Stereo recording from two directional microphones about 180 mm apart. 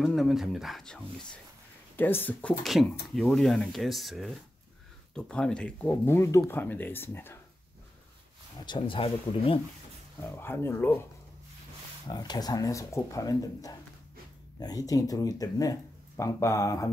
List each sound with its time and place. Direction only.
0.0 s speech: centre (ahead or behind)
8.6 s speech: 30° left (ahead or behind)
10.3 s speech: 15° left (ahead or behind)
12.1 s speech: 20° left (ahead or behind)